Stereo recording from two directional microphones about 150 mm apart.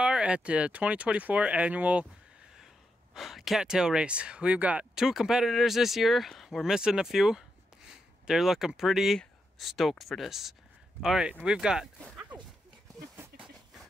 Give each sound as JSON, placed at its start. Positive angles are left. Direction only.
{"t": 0.0, "sound": "speech", "side_deg": -5}
{"t": 3.2, "sound": "speech", "side_deg": 0}
{"t": 13.3, "sound": "a sound", "side_deg": -90}